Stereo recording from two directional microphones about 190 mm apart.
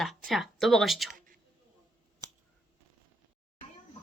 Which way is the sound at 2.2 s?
20° right (ahead or behind).